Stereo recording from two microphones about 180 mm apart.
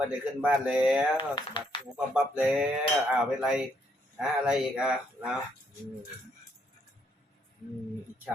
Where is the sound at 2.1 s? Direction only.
5° right (ahead or behind).